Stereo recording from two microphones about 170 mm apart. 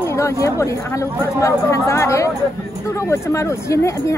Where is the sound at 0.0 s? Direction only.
15° left (ahead or behind).